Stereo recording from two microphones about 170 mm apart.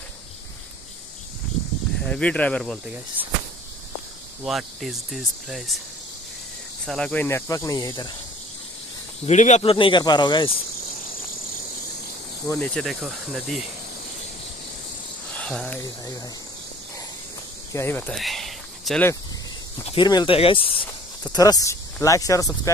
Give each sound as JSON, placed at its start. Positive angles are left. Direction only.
{"t": 2.0, "sound": "speech", "side_deg": 5}
{"t": 4.5, "sound": "speech", "side_deg": 0}
{"t": 6.9, "sound": "speech", "side_deg": 5}
{"t": 9.2, "sound": "speech", "side_deg": 45}
{"t": 12.4, "sound": "speech", "side_deg": 10}
{"t": 15.3, "sound": "speech", "side_deg": 5}
{"t": 17.7, "sound": "speech", "side_deg": 10}
{"t": 18.2, "sound": "a sound", "side_deg": 0}
{"t": 19.8, "sound": "speech", "side_deg": 30}
{"t": 21.3, "sound": "speech", "side_deg": 20}